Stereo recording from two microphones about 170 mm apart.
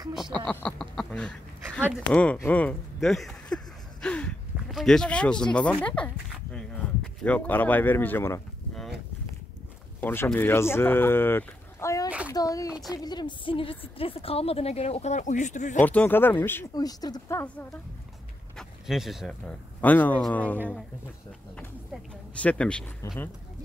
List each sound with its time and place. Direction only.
0.1 s speech: centre (ahead or behind)
0.5 s a sound: 5° left (ahead or behind)
2.3 s speech: 10° left (ahead or behind)
9.9 s a woman's voice: 10° left (ahead or behind); by 15.8 s 45° left (ahead or behind)
15.8 s speech: 10° left (ahead or behind)
18.6 s speech: centre (ahead or behind)
21.9 s speech: 10° left (ahead or behind)